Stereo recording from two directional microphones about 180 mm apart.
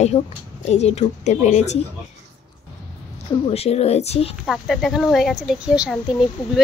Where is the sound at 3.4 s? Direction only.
35° left (ahead or behind).